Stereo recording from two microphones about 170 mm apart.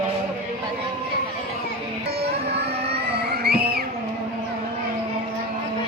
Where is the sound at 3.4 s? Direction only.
65° right (ahead or behind).